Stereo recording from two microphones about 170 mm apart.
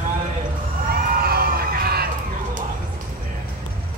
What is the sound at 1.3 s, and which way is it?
Crowd, 65° right (ahead or behind).